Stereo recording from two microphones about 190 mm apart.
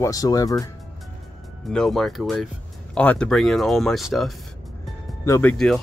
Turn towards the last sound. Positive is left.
turn(degrees=5)  # may be behind; listen again after turning